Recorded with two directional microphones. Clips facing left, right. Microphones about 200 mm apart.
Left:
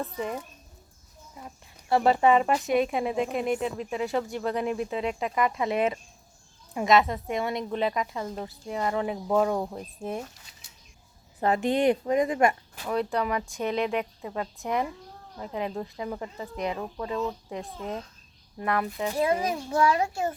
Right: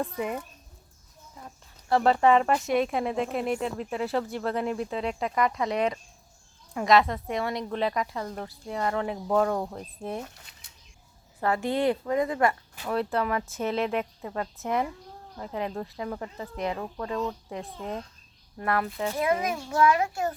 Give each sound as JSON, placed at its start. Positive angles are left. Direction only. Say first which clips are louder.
{"t": 0.0, "sound": "speech", "louder": "right 1 dB", "side_deg": -5}
{"t": 1.5, "sound": "a sound", "louder": "even", "side_deg": 5}
{"t": 2.2, "sound": "speech", "louder": "even", "side_deg": 5}
{"t": 11.4, "sound": "a woman's voice", "louder": "left 2 dB", "side_deg": 20}
{"t": 12.8, "sound": "speech", "louder": "even", "side_deg": 0}
{"t": 19.1, "sound": "a child's voice", "louder": "left 1 dB", "side_deg": 30}